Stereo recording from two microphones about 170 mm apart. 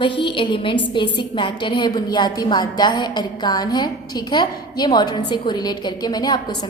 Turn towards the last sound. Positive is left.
turn(degrees=25)  # may be behind; listen again after turning